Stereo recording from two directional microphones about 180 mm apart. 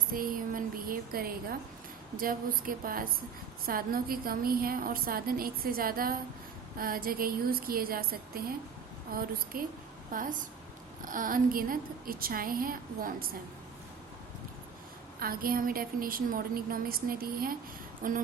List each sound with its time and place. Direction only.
0.1 s a woman's voice: 50° right (ahead or behind)
9.1 s a woman's voice: 50° right (ahead or behind)
15.2 s a woman's voice: 55° right (ahead or behind)